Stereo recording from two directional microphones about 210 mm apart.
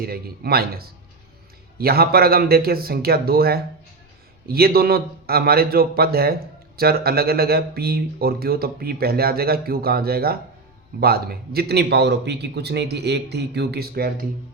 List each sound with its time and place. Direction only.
0.0 s speech: 45° right (ahead or behind)